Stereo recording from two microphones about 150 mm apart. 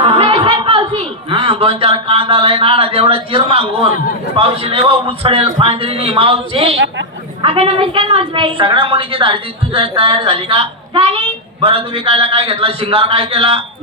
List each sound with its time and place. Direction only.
0.0 s chuckle: 40° right (ahead or behind)
4.4 s a woman's voice: 40° right (ahead or behind)